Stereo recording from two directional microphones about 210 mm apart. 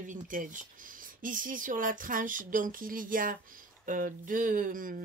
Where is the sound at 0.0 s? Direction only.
40° right (ahead or behind).